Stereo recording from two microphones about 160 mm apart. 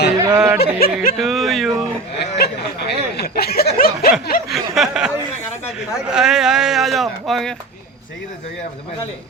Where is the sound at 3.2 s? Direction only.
75° left (ahead or behind).